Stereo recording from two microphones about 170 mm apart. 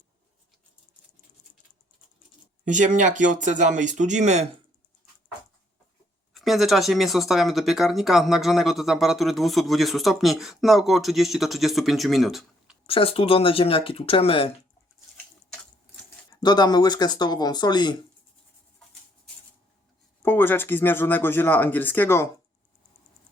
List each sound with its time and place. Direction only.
2.6 s speech: 45° right (ahead or behind)
6.3 s speech: centre (ahead or behind)
12.9 s speech: 35° left (ahead or behind)
16.3 s speech: 25° left (ahead or behind)
20.2 s speech: 15° left (ahead or behind)